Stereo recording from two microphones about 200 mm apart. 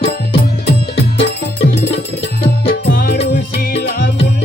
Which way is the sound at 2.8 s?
45° left (ahead or behind).